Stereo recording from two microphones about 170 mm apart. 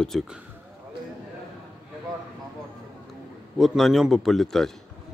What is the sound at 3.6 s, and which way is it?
Speech, centre (ahead or behind).